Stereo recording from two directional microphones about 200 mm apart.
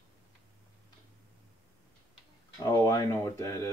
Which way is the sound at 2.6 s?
15° left (ahead or behind).